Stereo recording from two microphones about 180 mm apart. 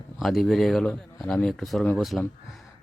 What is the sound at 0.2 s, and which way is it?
Speech, centre (ahead or behind).